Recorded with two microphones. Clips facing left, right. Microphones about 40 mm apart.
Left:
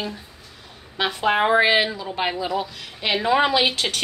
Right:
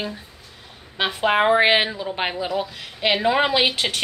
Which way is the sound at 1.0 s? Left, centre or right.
Centre.